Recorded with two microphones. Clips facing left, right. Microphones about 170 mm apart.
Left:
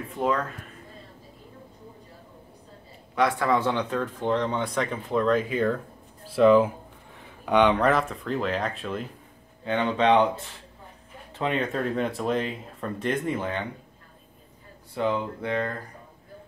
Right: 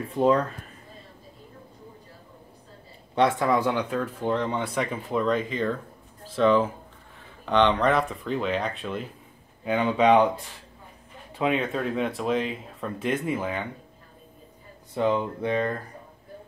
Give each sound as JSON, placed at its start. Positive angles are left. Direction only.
{"t": 0.1, "sound": "speech", "side_deg": -30}
{"t": 3.2, "sound": "speech", "side_deg": -20}
{"t": 15.0, "sound": "speech", "side_deg": -20}